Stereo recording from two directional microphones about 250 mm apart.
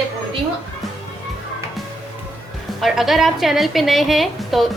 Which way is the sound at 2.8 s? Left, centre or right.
Centre.